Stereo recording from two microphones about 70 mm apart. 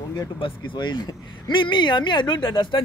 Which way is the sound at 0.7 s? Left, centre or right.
Left.